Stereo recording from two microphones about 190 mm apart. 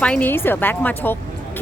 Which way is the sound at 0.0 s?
5° left (ahead or behind).